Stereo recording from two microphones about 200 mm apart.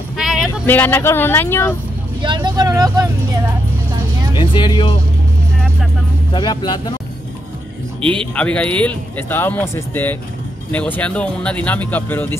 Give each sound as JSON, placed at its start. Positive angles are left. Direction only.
{"t": 0.2, "sound": "a sound", "side_deg": 0}
{"t": 0.5, "sound": "speech", "side_deg": 10}
{"t": 2.2, "sound": "speech", "side_deg": -20}
{"t": 4.4, "sound": "speech", "side_deg": 25}
{"t": 6.3, "sound": "speech", "side_deg": 20}
{"t": 8.0, "sound": "speech", "side_deg": 5}